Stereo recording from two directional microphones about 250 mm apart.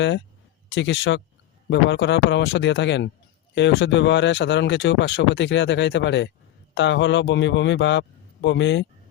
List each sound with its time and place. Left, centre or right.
0.7 s speech: left